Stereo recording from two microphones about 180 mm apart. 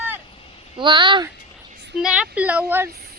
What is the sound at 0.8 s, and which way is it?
Speech, 25° right (ahead or behind).